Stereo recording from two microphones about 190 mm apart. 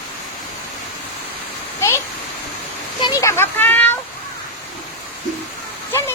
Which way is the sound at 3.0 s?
20° left (ahead or behind).